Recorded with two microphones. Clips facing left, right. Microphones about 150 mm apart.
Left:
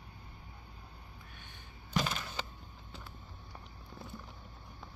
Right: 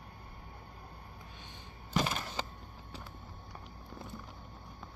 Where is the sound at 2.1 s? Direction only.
35° right (ahead or behind).